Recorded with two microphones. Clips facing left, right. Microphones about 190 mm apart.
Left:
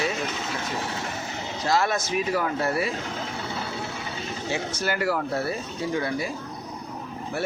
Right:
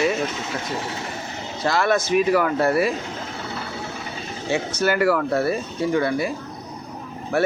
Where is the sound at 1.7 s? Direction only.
65° right (ahead or behind).